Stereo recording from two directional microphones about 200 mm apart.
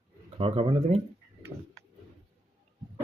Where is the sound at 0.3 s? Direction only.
30° right (ahead or behind).